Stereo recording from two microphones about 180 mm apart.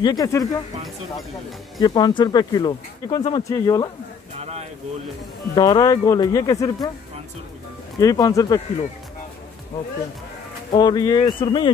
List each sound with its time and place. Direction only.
0.0 s speech: 20° left (ahead or behind)
1.8 s speech: 25° left (ahead or behind)
5.5 s speech: 20° left (ahead or behind)
8.0 s speech: 20° left (ahead or behind)
10.7 s speech: 25° left (ahead or behind)